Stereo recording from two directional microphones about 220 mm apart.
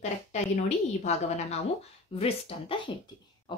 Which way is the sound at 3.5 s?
20° left (ahead or behind).